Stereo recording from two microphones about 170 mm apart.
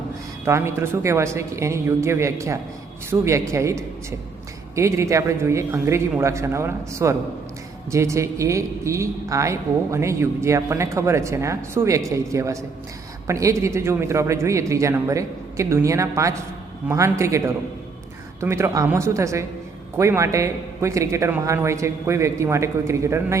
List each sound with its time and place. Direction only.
0.4 s speech: 15° right (ahead or behind)